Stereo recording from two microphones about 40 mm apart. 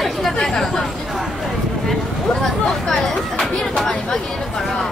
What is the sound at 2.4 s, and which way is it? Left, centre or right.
Speech, centre.